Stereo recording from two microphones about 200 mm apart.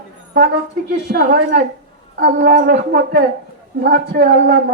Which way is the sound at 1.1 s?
45° right (ahead or behind).